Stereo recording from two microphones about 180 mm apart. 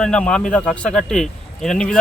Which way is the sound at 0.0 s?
5° left (ahead or behind).